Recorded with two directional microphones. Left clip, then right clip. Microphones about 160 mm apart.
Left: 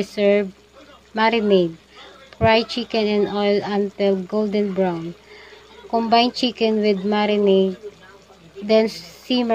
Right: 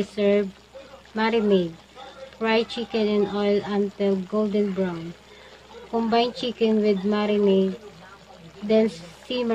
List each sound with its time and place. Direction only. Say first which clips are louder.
0.0 s speech: left 4 dB; 30° left (ahead or behind)
8.6 s speech: left 4 dB; 30° left (ahead or behind)